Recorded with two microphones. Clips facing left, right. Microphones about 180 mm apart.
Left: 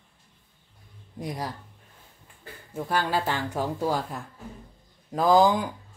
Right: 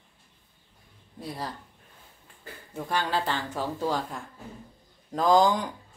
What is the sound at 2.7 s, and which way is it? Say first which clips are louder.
Speech: left 2 dB; 10° left (ahead or behind).